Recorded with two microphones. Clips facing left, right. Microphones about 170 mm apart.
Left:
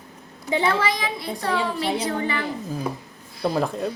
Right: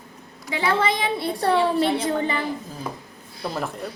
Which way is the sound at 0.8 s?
30° right (ahead or behind).